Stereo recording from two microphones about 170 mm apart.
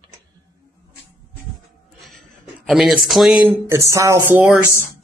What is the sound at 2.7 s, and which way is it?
Speech, 5° right (ahead or behind).